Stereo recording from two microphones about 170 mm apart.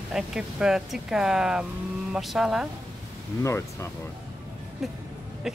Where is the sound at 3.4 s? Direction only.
15° left (ahead or behind).